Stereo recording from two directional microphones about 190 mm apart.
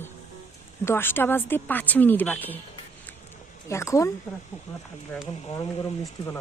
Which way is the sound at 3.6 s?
15° left (ahead or behind).